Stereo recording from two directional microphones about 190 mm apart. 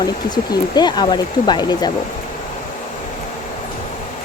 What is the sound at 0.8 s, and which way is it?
Speech, 20° left (ahead or behind).